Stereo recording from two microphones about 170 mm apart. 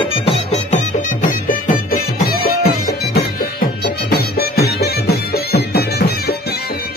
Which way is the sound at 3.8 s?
70° left (ahead or behind).